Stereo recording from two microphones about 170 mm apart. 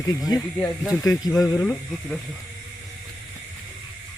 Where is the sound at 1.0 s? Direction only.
20° left (ahead or behind).